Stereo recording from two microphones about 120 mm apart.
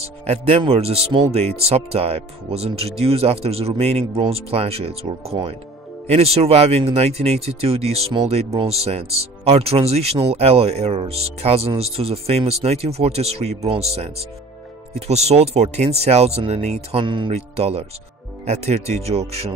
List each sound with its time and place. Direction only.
0.3 s speech: 55° right (ahead or behind)
17.3 s speech: 60° right (ahead or behind)